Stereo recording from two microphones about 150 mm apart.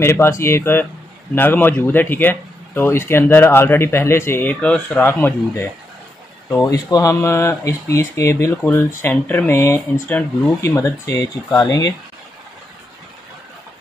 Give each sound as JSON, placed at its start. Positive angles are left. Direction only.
{"t": 0.0, "sound": "speech", "side_deg": 15}